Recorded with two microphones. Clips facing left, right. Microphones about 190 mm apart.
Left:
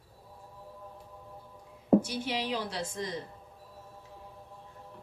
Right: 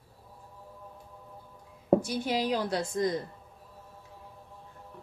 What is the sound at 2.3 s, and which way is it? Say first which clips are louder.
Speech: right 5 dB; 40° right (ahead or behind).